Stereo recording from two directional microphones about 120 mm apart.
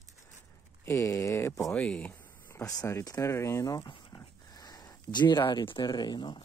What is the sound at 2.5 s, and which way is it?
Speech, 30° left (ahead or behind).